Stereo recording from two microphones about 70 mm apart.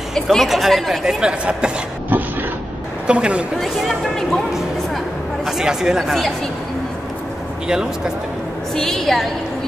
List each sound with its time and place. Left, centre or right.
0.1 s speech: centre
3.1 s speech: centre
3.5 s a sound: centre
5.4 s speech: centre
7.6 s speech: centre
8.7 s speech: centre